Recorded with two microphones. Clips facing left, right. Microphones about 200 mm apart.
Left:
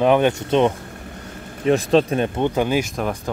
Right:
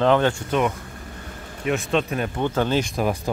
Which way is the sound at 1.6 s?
35° left (ahead or behind).